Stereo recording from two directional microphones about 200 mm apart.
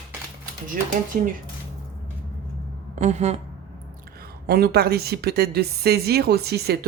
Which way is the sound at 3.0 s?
35° right (ahead or behind).